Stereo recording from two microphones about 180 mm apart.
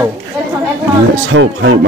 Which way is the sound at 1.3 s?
90° right.